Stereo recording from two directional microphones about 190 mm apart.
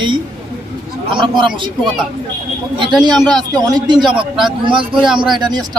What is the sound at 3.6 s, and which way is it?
Speech, 20° right (ahead or behind).